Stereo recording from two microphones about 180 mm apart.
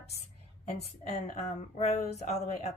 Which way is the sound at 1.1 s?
35° left (ahead or behind).